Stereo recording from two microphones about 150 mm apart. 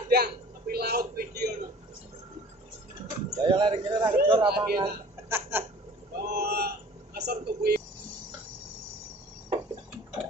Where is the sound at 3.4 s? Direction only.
35° right (ahead or behind).